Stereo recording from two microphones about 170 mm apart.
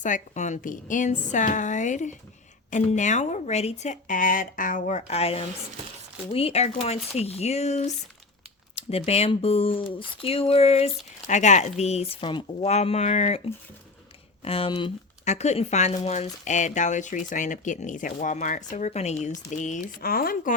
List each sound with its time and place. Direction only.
0.0 s speech: 45° left (ahead or behind)
14.4 s speech: 35° left (ahead or behind); by 20.6 s 55° left (ahead or behind)